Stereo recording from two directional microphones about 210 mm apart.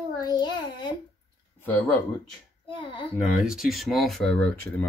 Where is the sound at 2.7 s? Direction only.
25° left (ahead or behind).